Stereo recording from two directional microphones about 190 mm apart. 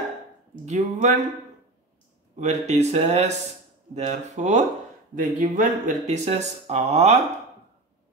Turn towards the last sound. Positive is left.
turn(degrees=-35)  # may be behind; listen again after turning